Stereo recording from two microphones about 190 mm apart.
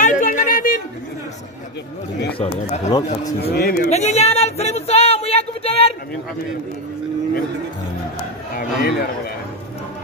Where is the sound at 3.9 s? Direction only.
35° left (ahead or behind).